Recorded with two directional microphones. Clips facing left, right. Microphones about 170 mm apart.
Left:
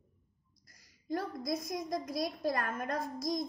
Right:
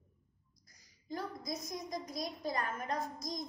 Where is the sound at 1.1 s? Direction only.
60° left (ahead or behind).